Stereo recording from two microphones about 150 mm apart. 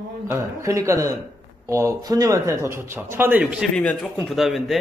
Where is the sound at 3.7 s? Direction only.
5° left (ahead or behind).